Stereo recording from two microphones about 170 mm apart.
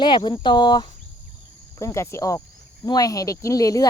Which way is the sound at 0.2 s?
25° left (ahead or behind).